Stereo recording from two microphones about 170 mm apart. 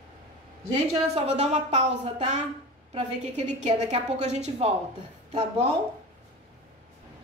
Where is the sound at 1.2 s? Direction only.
40° right (ahead or behind).